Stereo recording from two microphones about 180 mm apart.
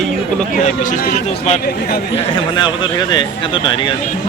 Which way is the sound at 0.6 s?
40° left (ahead or behind).